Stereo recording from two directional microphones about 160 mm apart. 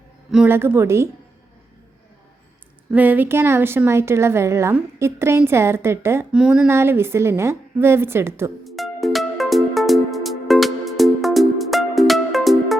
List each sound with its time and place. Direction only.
0.4 s a woman's voice: 15° right (ahead or behind)
2.9 s a woman's voice: 10° right (ahead or behind)
8.6 s music: centre (ahead or behind)